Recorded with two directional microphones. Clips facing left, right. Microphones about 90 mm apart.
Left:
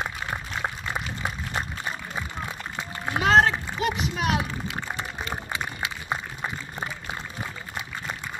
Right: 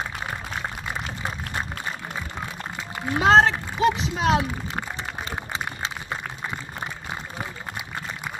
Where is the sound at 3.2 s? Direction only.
25° right (ahead or behind).